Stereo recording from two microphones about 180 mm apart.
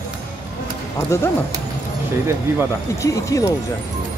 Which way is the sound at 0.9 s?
15° left (ahead or behind).